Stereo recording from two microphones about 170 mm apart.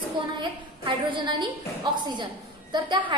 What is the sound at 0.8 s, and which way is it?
A woman's voice, 25° right (ahead or behind).